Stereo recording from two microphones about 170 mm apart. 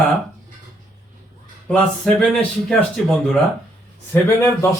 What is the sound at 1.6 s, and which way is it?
Speech, 5° left (ahead or behind).